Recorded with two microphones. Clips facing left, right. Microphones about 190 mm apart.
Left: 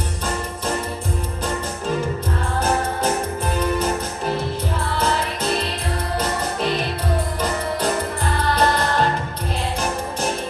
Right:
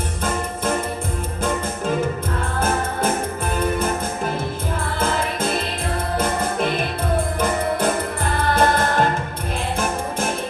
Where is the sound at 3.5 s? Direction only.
50° right (ahead or behind).